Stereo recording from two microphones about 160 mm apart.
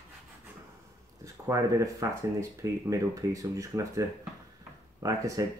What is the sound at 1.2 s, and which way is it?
Speech, 20° right (ahead or behind).